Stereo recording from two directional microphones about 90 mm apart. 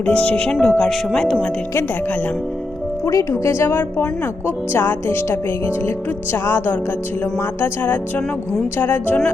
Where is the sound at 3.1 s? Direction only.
35° left (ahead or behind).